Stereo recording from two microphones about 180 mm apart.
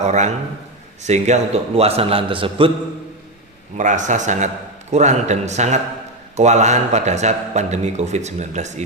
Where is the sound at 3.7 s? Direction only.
45° right (ahead or behind).